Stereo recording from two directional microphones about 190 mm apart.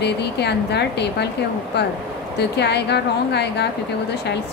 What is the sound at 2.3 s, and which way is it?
Speech, 60° left (ahead or behind).